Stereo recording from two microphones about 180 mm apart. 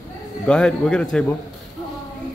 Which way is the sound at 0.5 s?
5° left (ahead or behind).